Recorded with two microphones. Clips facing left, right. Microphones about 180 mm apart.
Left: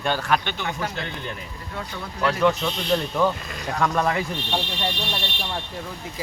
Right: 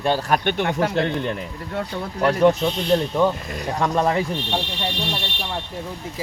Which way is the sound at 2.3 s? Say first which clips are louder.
Right 4 dB; 45° right (ahead or behind).